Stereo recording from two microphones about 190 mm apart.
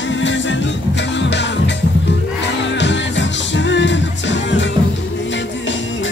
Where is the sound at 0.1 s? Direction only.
75° left (ahead or behind).